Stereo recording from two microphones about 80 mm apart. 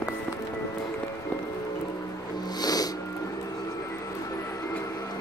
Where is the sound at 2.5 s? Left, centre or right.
Left.